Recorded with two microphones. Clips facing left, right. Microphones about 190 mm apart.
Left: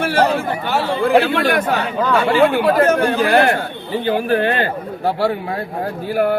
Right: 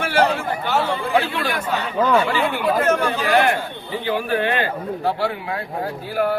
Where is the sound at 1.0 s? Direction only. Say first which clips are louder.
Left 7 dB; 65° left (ahead or behind).